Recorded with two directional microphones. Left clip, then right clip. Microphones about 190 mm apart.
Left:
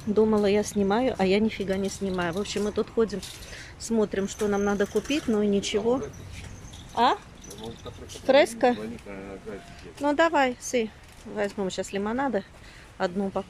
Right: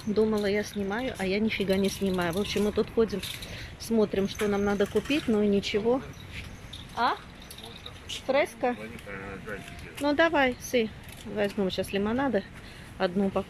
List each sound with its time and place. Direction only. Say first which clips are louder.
0.1 s speech: left 4 dB; 10° left (ahead or behind)
1.4 s speech: right 1 dB; centre (ahead or behind)
8.3 s a woman's voice: left 6 dB; 20° left (ahead or behind)
10.0 s speech: left 2 dB; 5° left (ahead or behind)